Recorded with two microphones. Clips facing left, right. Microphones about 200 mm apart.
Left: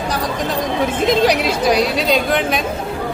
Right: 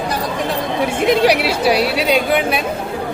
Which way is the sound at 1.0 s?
10° right (ahead or behind).